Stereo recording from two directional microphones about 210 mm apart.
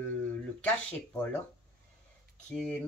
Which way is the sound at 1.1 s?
10° left (ahead or behind).